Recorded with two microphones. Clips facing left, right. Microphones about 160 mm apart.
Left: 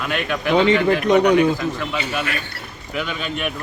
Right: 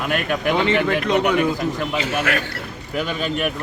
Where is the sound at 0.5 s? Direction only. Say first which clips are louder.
Left 6 dB; 15° left (ahead or behind).